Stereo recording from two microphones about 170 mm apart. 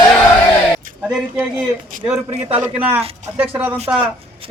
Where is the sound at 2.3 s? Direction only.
35° right (ahead or behind).